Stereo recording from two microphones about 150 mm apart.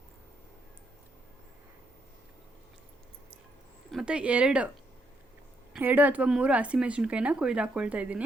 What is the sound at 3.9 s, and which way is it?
Speech, 5° right (ahead or behind).